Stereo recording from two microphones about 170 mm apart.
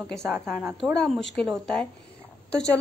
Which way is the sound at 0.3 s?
10° right (ahead or behind).